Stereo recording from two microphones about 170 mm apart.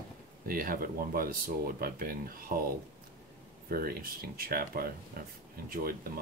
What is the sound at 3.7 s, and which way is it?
Speech, 60° right (ahead or behind).